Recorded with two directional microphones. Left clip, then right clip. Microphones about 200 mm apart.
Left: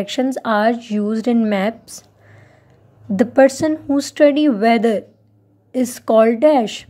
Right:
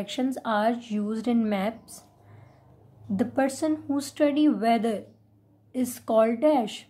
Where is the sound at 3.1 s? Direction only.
25° left (ahead or behind).